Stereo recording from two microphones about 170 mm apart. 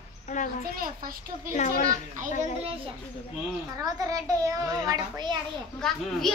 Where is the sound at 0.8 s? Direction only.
55° right (ahead or behind).